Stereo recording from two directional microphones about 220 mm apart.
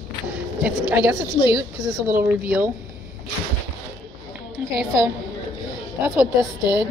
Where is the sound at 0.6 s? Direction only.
5° right (ahead or behind).